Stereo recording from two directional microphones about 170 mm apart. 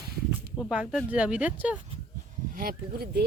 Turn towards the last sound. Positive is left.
turn(degrees=-65)  # may be behind; listen again after turning